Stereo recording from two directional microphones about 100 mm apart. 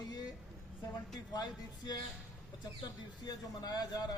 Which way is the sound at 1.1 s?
40° left (ahead or behind).